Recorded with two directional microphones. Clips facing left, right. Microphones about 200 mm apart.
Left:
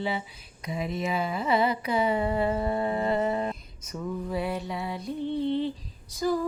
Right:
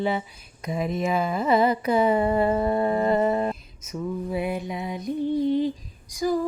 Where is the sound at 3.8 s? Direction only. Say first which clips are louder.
Right 2 dB; 10° right (ahead or behind).